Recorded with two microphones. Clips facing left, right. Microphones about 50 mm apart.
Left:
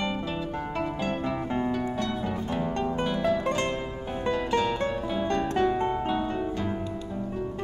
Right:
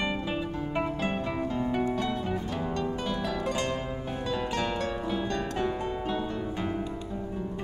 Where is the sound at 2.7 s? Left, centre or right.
Left.